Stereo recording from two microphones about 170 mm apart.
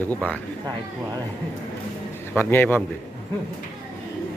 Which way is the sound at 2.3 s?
10° left (ahead or behind).